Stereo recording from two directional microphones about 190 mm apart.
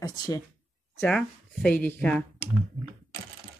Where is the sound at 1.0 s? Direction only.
Centre (ahead or behind).